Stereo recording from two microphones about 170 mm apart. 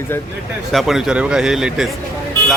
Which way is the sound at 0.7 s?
Centre (ahead or behind).